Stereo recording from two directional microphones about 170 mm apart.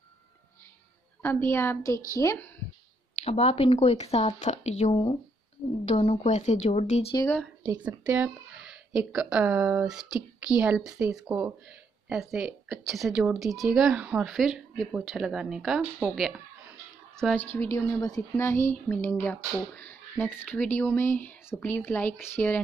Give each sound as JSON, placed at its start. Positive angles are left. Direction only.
{"t": 1.2, "sound": "a woman's voice", "side_deg": 15}
{"t": 3.3, "sound": "speech", "side_deg": 35}
{"t": 7.6, "sound": "a woman's voice", "side_deg": -10}
{"t": 17.6, "sound": "a woman's voice", "side_deg": 20}